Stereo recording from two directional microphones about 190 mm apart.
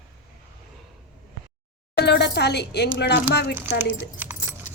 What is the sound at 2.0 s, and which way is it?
Speech, 60° left (ahead or behind).